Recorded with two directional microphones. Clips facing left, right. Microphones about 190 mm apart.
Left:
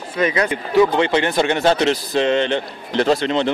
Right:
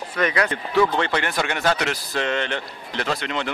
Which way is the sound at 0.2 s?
25° left (ahead or behind).